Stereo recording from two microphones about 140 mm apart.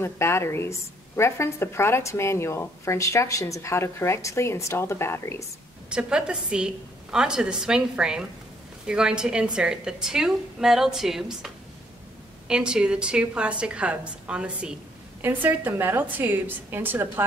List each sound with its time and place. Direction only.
0.0 s a woman's voice: 20° left (ahead or behind)
5.9 s a woman's voice: 5° right (ahead or behind)